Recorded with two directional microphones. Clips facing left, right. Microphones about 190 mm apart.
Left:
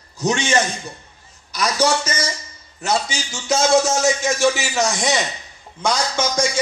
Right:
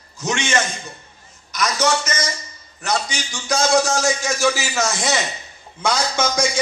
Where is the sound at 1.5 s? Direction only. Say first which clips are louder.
Left 1 dB; 30° left (ahead or behind).